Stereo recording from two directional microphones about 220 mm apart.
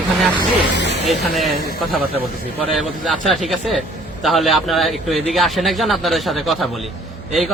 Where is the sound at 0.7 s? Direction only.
50° left (ahead or behind).